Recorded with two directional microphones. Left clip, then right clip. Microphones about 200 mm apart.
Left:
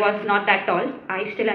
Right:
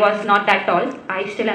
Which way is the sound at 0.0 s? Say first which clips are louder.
Right 4 dB; 45° right (ahead or behind).